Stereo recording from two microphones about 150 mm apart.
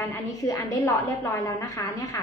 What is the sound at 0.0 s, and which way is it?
A woman's voice, 20° left (ahead or behind).